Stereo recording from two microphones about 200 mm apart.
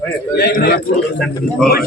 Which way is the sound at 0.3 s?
55° left (ahead or behind).